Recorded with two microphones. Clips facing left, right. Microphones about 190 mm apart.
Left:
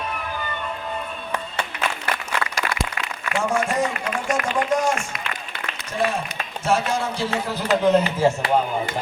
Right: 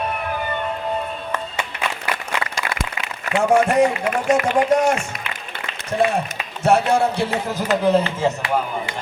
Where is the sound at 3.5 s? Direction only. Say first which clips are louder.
Right 9 dB; 60° right (ahead or behind).